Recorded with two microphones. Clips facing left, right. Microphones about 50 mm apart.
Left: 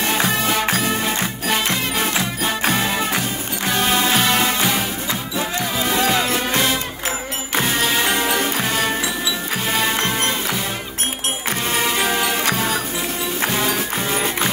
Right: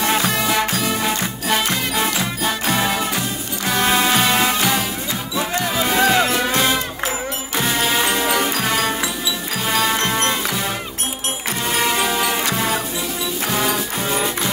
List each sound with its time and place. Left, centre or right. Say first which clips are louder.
0.0 s music: right 1 dB; right
0.7 s music: left 2 dB; left
2.0 s music: even; left
3.8 s music: right 2 dB; right
4.3 s music: right 1 dB; centre
5.9 s music: right 3 dB; centre
8.3 s music: right 1 dB; right
13.6 s music: even; right